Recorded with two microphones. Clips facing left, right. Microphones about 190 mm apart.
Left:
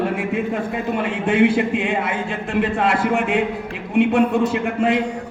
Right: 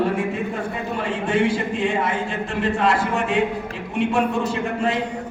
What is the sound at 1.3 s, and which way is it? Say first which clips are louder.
A man's voice: left 5 dB; 60° left (ahead or behind).